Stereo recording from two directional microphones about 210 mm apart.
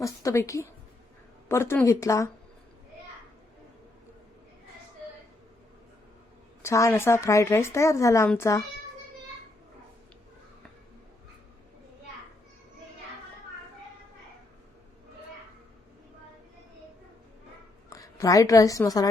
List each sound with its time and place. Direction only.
0.0 s a woman's voice: 15° left (ahead or behind)
6.6 s a woman's voice: 15° left (ahead or behind)
17.8 s a woman's voice: 15° left (ahead or behind)